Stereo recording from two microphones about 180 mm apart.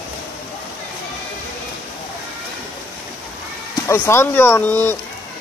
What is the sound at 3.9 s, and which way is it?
Speech, 15° left (ahead or behind).